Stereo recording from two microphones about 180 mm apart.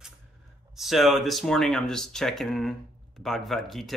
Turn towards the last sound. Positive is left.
turn(degrees=0)  # may be behind; listen again after turning